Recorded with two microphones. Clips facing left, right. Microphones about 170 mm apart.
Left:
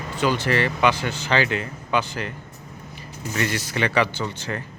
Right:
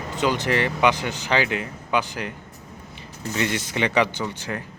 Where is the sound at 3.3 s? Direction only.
20° right (ahead or behind).